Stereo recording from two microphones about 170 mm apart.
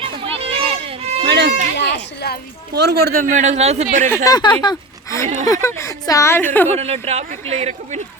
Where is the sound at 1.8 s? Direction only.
80° left.